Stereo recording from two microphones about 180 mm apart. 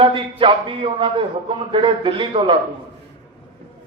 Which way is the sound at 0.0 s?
30° right (ahead or behind).